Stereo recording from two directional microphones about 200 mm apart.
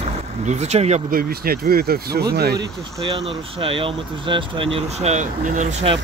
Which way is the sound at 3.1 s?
25° right (ahead or behind).